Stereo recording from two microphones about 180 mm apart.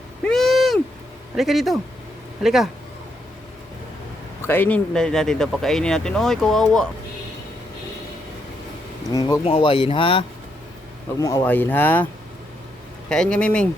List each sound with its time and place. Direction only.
0.3 s a sound: centre (ahead or behind)
1.4 s speech: centre (ahead or behind)
4.4 s speech: 10° left (ahead or behind)
9.1 s speech: 20° left (ahead or behind)
11.2 s speech: 20° left (ahead or behind)
13.1 s speech: 5° left (ahead or behind)